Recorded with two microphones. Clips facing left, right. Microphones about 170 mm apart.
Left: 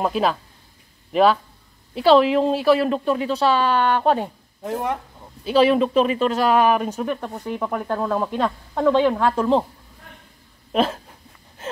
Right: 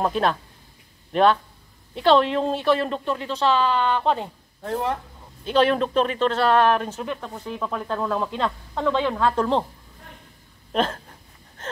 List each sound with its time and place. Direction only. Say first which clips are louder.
0.0 s speech: left 1 dB; 5° left (ahead or behind)
10.7 s speech: left 3 dB; 10° left (ahead or behind)